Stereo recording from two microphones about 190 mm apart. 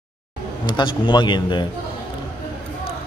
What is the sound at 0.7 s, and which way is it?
A man's voice, 25° left (ahead or behind).